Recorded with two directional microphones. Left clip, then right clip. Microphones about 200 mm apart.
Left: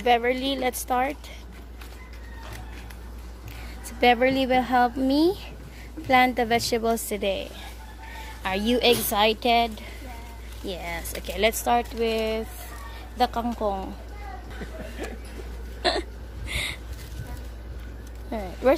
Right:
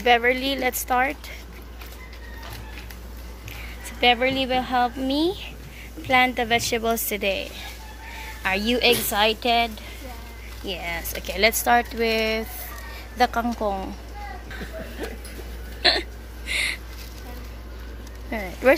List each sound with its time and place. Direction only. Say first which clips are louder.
0.0 s speech: right 3 dB; 5° left (ahead or behind)
4.0 s a woman's voice: even; 30° left (ahead or behind)
10.7 s speech: right 3 dB; 15° left (ahead or behind)
15.8 s hiccup: right 5 dB; 15° left (ahead or behind)
18.3 s speech: right 3 dB; 5° left (ahead or behind)